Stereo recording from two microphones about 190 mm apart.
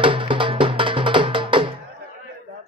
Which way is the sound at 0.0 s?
25° right (ahead or behind).